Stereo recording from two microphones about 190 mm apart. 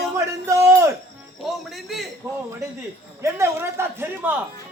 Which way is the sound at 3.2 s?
15° right (ahead or behind).